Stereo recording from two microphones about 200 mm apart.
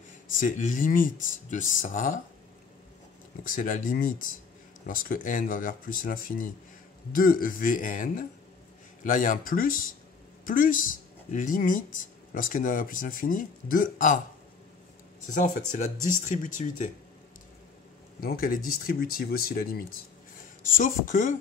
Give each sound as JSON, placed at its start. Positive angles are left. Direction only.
{"t": 0.4, "sound": "speech", "side_deg": 40}
{"t": 3.4, "sound": "speech", "side_deg": 45}
{"t": 15.2, "sound": "speech", "side_deg": 40}
{"t": 18.2, "sound": "speech", "side_deg": 45}